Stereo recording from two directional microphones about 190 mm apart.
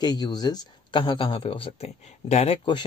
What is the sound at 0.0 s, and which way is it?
Speech, 20° left (ahead or behind).